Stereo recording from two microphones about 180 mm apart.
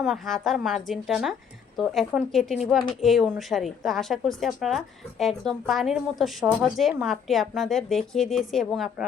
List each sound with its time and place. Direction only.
0.0 s a woman's voice: centre (ahead or behind)